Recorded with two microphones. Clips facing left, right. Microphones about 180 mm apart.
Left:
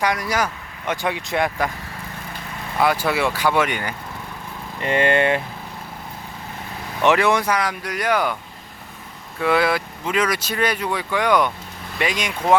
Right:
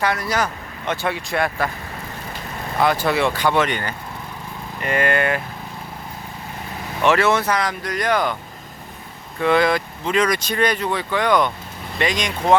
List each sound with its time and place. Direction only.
0.0 s speech: 15° left (ahead or behind)
2.8 s speech: 10° left (ahead or behind)
4.8 s speech: 25° left (ahead or behind)
7.0 s speech: 15° left (ahead or behind)
9.4 s speech: 5° left (ahead or behind)